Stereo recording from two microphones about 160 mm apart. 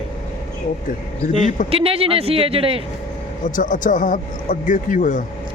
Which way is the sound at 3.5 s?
55° left (ahead or behind).